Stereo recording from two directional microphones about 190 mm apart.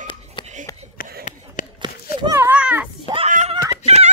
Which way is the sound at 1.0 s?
50° left (ahead or behind).